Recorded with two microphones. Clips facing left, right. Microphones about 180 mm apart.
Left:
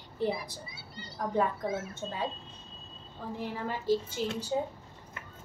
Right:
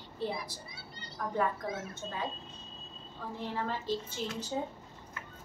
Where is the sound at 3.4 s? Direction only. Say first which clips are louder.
Even; 10° left (ahead or behind).